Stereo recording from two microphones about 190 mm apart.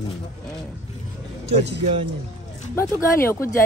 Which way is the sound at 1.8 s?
35° right (ahead or behind).